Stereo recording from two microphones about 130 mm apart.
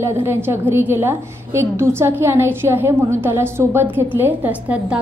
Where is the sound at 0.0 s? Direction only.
20° right (ahead or behind).